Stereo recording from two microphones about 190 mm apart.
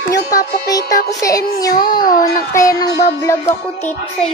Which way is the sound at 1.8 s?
50° left (ahead or behind).